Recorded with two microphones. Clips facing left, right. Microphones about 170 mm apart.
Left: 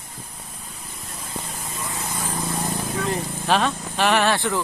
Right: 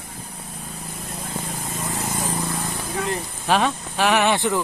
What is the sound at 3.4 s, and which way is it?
Speech, 10° right (ahead or behind).